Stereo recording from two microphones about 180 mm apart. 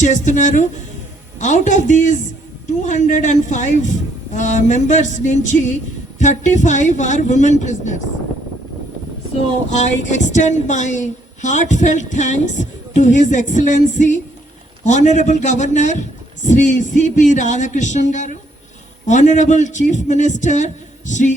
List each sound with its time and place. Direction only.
0.0 s a woman's voice: 40° left (ahead or behind)
9.6 s a woman's voice: 40° left (ahead or behind)